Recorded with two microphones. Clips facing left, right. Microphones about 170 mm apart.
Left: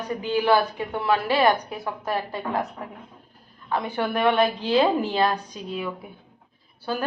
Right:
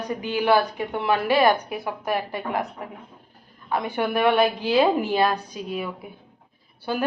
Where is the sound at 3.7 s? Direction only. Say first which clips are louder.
Right 1 dB; 10° right (ahead or behind).